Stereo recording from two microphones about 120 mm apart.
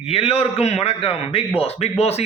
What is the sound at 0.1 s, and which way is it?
A man's voice, 55° left (ahead or behind).